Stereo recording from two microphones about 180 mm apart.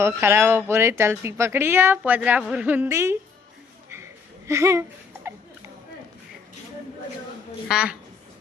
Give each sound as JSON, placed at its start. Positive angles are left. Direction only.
{"t": 0.0, "sound": "speech", "side_deg": -15}
{"t": 4.4, "sound": "a sound", "side_deg": -15}
{"t": 7.7, "sound": "a woman's voice", "side_deg": -5}